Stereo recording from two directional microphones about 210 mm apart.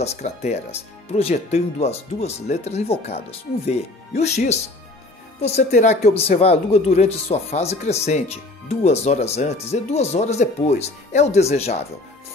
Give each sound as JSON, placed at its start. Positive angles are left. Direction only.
{"t": 0.0, "sound": "speech", "side_deg": 30}